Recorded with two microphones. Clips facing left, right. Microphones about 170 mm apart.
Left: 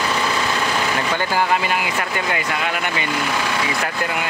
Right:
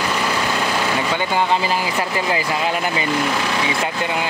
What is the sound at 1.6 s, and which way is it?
Speech, 30° right (ahead or behind).